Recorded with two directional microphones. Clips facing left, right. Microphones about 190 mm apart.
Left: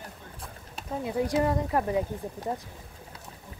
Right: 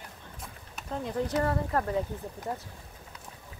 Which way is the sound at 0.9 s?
10° left (ahead or behind).